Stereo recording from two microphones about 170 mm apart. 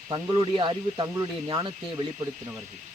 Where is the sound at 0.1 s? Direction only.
25° right (ahead or behind).